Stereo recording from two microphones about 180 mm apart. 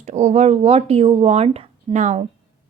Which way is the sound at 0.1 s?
40° right (ahead or behind).